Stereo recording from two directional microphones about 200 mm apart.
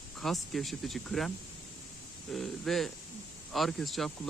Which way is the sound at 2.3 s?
Centre (ahead or behind).